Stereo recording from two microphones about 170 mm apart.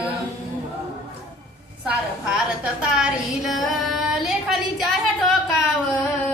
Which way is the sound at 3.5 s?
Centre (ahead or behind).